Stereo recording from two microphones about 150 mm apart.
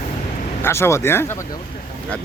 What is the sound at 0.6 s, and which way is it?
Speech, 15° left (ahead or behind).